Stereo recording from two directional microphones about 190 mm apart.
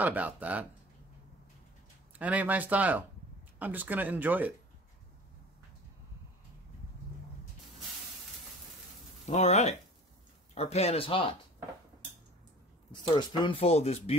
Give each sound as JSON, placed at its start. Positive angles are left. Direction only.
{"t": 0.0, "sound": "speech", "side_deg": -10}
{"t": 2.1, "sound": "speech", "side_deg": -10}
{"t": 9.2, "sound": "speech", "side_deg": 35}
{"t": 13.0, "sound": "speech", "side_deg": 25}